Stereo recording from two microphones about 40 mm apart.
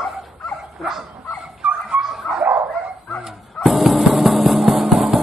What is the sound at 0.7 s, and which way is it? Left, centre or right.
Dog, centre.